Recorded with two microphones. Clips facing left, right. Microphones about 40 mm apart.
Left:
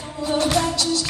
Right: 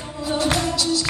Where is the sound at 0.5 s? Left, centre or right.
Left.